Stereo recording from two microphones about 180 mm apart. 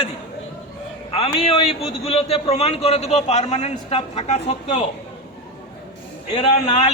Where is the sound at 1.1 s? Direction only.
30° left (ahead or behind).